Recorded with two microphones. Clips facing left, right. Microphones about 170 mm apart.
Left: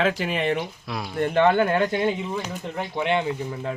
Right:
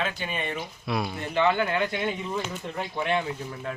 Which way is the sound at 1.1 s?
55° left (ahead or behind).